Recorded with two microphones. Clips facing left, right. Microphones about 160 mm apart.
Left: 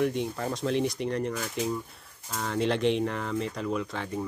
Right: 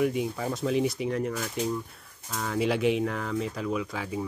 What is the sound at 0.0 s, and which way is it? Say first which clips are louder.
Speech: right 1 dB; 5° right (ahead or behind).